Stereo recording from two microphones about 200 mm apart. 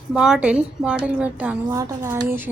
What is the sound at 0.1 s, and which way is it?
A woman's voice, 5° right (ahead or behind).